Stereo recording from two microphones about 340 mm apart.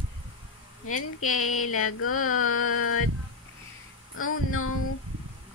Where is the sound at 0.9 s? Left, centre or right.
Left.